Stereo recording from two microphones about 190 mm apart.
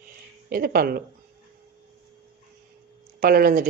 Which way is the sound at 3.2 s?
50° right (ahead or behind).